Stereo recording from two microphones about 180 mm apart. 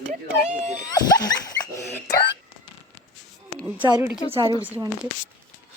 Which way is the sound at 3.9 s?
15° right (ahead or behind).